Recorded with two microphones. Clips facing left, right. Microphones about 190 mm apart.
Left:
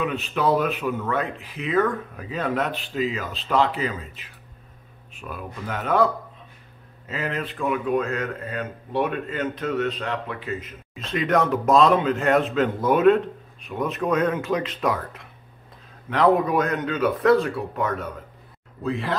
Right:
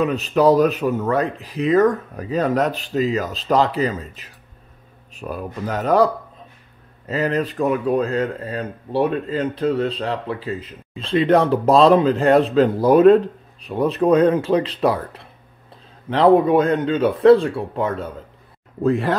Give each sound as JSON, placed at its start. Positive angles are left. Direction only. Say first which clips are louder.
{"t": 0.0, "sound": "speech", "louder": "right 7 dB", "side_deg": -40}
{"t": 7.1, "sound": "speech", "louder": "right 8 dB", "side_deg": -40}
{"t": 18.8, "sound": "speech", "louder": "right 8 dB", "side_deg": -45}